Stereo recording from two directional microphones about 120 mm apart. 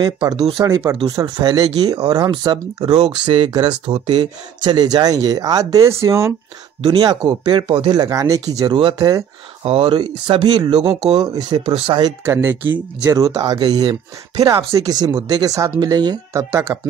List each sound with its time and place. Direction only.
0.0 s speech: 35° right (ahead or behind)
6.9 s speech: 35° right (ahead or behind)
9.6 s speech: 50° right (ahead or behind)
9.9 s speech: 40° right (ahead or behind)
11.6 s speech: 55° right (ahead or behind)
12.3 s speech: 20° right (ahead or behind)
13.0 s speech: 30° right (ahead or behind)